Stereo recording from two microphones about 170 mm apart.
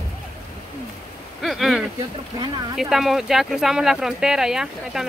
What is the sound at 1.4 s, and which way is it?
Speech, centre (ahead or behind).